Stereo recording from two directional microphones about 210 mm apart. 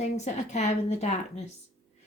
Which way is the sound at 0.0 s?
35° left (ahead or behind).